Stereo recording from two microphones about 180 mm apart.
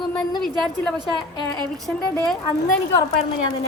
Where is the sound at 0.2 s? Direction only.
5° left (ahead or behind).